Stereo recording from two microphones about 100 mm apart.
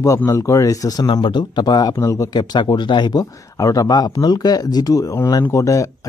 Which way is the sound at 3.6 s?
35° left (ahead or behind).